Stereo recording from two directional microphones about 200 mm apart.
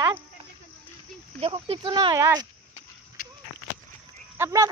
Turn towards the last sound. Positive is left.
turn(degrees=-15)  # may be behind; listen again after turning